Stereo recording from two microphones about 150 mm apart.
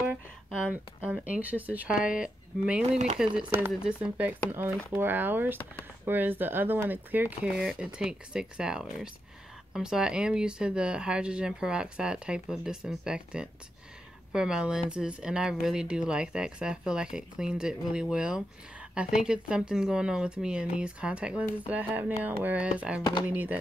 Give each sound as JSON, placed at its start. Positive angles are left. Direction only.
{"t": 1.0, "sound": "speech", "side_deg": -10}
{"t": 2.9, "sound": "speech", "side_deg": -50}
{"t": 3.2, "sound": "speech", "side_deg": -5}